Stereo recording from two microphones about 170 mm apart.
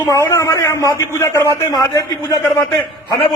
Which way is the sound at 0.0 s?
20° left (ahead or behind).